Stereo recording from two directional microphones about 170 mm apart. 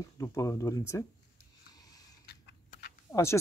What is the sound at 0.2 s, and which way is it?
Speech, 20° left (ahead or behind).